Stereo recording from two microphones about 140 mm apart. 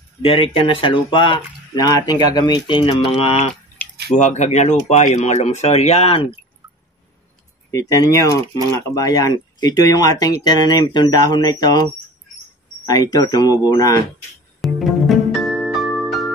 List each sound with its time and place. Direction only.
0.2 s speech: 40° left (ahead or behind)
7.7 s speech: 25° left (ahead or behind)
12.8 s speech: 25° left (ahead or behind)
14.6 s music: centre (ahead or behind)